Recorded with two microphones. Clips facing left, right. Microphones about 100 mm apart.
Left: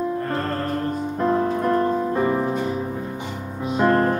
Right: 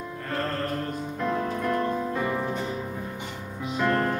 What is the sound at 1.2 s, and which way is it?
Music, 35° left (ahead or behind).